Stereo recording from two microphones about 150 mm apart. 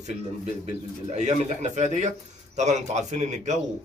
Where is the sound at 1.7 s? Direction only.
50° right (ahead or behind).